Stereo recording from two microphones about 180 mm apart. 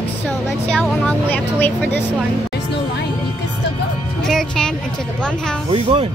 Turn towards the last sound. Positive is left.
turn(degrees=-35)  # may be behind; listen again after turning